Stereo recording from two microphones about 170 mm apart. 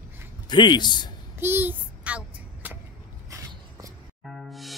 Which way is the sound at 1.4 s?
10° right (ahead or behind).